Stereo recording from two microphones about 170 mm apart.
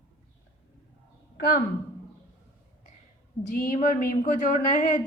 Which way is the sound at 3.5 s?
50° left (ahead or behind).